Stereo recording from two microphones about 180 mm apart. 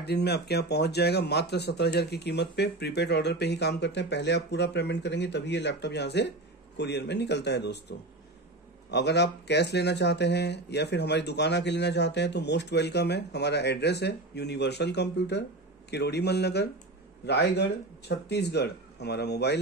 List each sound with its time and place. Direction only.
0.0 s speech: 65° left (ahead or behind)
8.9 s speech: 70° left (ahead or behind)